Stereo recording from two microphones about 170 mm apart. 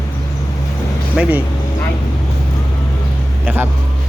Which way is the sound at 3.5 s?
10° right (ahead or behind).